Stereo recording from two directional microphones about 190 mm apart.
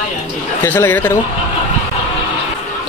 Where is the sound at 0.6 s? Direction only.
10° left (ahead or behind).